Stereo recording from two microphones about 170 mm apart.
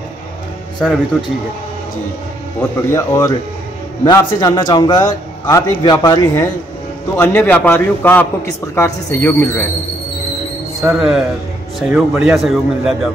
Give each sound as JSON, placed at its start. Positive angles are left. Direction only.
{"t": 0.8, "sound": "a man's voice", "side_deg": 5}
{"t": 2.9, "sound": "a man's voice", "side_deg": 15}
{"t": 10.8, "sound": "a man's voice", "side_deg": -5}